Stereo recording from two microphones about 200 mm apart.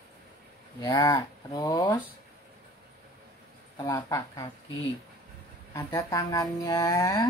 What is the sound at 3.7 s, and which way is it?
Speech, 15° left (ahead or behind).